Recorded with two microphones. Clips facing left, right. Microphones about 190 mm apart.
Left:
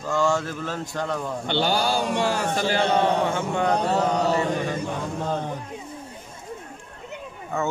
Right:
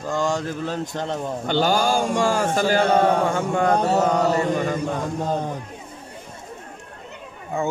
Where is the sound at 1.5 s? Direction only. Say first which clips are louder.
Right 3 dB; 45° right (ahead or behind).